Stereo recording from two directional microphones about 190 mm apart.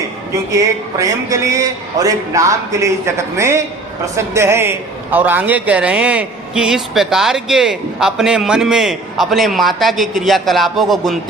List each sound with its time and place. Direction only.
0.5 s a man's voice: 15° right (ahead or behind); by 11.2 s centre (ahead or behind)